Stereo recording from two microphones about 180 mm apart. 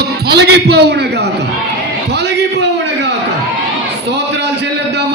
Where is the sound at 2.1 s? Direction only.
70° right (ahead or behind).